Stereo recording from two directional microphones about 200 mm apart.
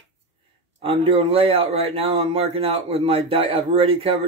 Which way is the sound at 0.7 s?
30° right (ahead or behind).